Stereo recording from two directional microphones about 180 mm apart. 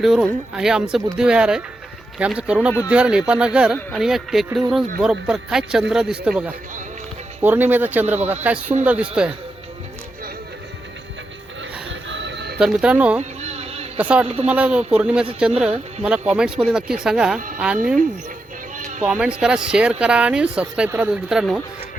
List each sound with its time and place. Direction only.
0.0 s speech: 5° right (ahead or behind)
11.9 s music: 90° right; by 12.5 s 70° right (ahead or behind)
12.5 s speech: 5° right (ahead or behind)
13.4 s a sound: 35° right (ahead or behind)
14.0 s speech: 5° right (ahead or behind)
19.0 s speech: 5° right (ahead or behind)